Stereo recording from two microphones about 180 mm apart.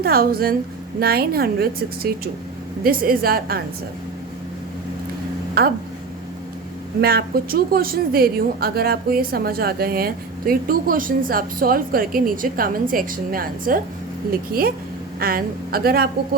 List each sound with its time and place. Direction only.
0.0 s a woman's voice: 55° right (ahead or behind)
5.6 s a woman's voice: 60° right (ahead or behind)
7.0 s a woman's voice: 60° right (ahead or behind)